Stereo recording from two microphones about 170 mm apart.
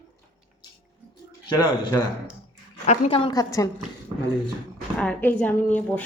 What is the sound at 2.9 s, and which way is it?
Speech, 35° left (ahead or behind).